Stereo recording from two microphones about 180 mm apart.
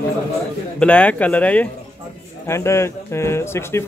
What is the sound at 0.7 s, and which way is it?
Speech, 5° left (ahead or behind).